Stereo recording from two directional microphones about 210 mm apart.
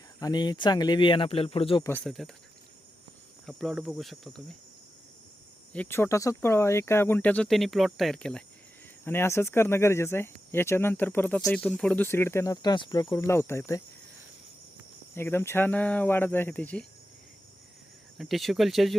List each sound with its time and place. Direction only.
0.2 s speech: 20° left (ahead or behind)
2.0 s cricket: centre (ahead or behind)
3.4 s cricket: centre (ahead or behind)
5.7 s speech: 10° left (ahead or behind)
15.1 s speech: 10° left (ahead or behind)
18.2 s cricket: centre (ahead or behind)